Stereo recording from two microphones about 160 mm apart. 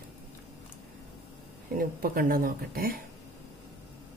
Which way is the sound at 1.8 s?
65° right (ahead or behind).